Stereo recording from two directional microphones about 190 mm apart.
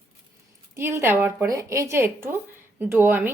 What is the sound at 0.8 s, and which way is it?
A woman's voice, 15° right (ahead or behind).